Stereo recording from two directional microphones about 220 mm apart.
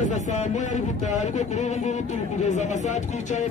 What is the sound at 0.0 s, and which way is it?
Speech, 35° left (ahead or behind).